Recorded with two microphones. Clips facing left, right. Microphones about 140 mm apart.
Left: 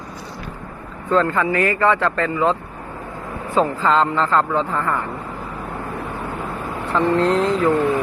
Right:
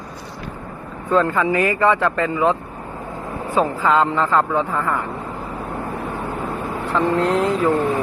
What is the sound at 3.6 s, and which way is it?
Speech, 10° right (ahead or behind).